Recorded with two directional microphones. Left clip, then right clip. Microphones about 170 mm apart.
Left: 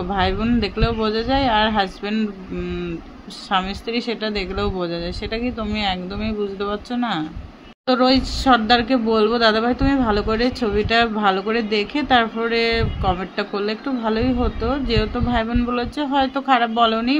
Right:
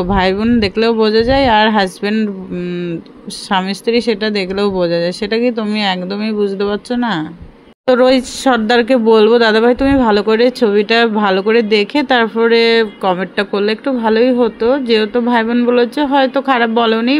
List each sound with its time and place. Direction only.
0.0 s speech: 45° right (ahead or behind)